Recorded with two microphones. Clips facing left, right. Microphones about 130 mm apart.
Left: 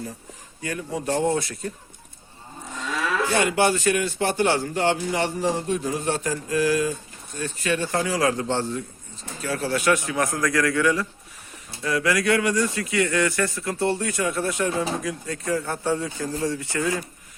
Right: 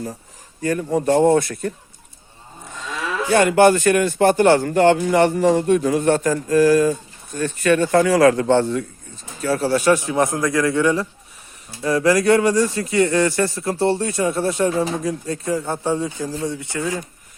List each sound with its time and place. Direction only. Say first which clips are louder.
0.6 s a man's voice: right 9 dB; 45° right (ahead or behind)
3.3 s a man's voice: right 10 dB; 50° right (ahead or behind)
7.3 s speech: right 8 dB; 55° right (ahead or behind)
9.4 s a man's voice: right 6 dB; 35° right (ahead or behind); by 17.0 s 20° right (ahead or behind)